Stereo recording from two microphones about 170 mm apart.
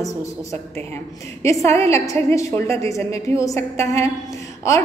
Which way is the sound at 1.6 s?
15° left (ahead or behind).